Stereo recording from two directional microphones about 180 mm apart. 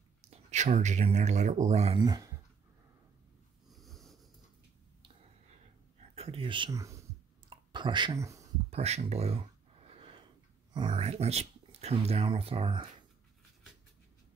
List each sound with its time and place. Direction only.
0.3 s speech: 40° right (ahead or behind)
2.0 s speech: 25° right (ahead or behind)
3.7 s wheeze: centre (ahead or behind)
5.9 s a sound: 35° right (ahead or behind); by 8.5 s 15° right (ahead or behind)
8.6 s speech: 35° right (ahead or behind)
9.8 s a sound: 30° right (ahead or behind)
10.7 s speech: 25° right (ahead or behind)